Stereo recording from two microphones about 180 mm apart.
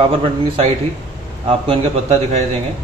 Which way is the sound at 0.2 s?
35° right (ahead or behind).